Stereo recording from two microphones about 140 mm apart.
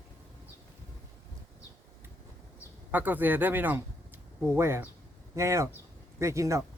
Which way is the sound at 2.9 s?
10° right (ahead or behind).